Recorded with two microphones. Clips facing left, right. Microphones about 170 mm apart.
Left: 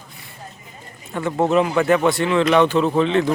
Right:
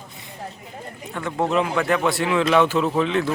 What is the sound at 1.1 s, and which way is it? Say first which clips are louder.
Speech: left 4 dB; 5° left (ahead or behind).